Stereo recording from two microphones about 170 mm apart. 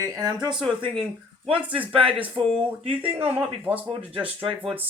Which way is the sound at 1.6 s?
10° right (ahead or behind).